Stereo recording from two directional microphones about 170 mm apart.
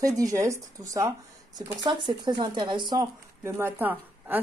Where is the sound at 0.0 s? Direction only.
20° right (ahead or behind).